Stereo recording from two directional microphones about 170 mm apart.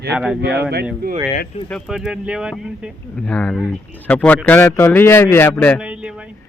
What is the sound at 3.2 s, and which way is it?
Speech, 5° left (ahead or behind).